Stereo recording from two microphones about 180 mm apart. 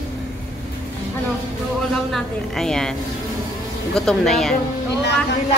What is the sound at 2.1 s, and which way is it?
A woman's voice, centre (ahead or behind).